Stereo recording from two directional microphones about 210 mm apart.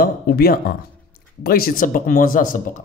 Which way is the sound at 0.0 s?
45° left (ahead or behind).